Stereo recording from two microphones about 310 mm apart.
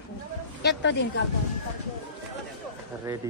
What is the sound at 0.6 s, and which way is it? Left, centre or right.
Speech, left.